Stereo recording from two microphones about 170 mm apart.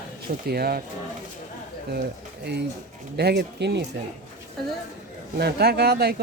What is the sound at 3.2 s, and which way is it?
Speech, 75° right (ahead or behind).